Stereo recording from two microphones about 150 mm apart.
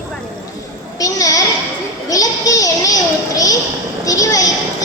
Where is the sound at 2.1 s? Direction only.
25° left (ahead or behind).